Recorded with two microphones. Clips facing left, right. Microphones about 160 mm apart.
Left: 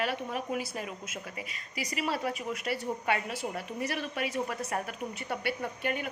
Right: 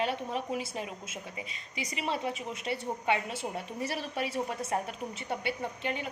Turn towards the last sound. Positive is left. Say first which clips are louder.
# left 1 dB
turn(degrees=-25)  # may be behind; listen again after turning